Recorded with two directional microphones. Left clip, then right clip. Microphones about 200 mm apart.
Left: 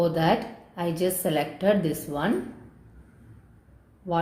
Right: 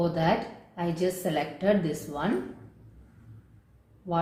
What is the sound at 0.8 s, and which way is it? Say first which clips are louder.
A woman's voice: left 2 dB; 45° left (ahead or behind).